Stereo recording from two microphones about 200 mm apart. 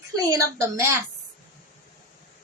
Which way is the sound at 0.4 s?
15° right (ahead or behind).